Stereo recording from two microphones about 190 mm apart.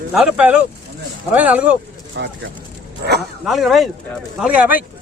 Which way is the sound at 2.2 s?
70° right (ahead or behind).